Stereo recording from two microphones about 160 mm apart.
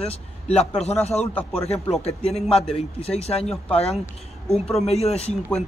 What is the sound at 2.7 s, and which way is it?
Speech, 40° left (ahead or behind).